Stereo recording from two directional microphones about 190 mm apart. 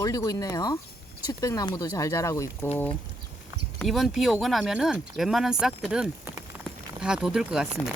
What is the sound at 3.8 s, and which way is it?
Speech, centre (ahead or behind).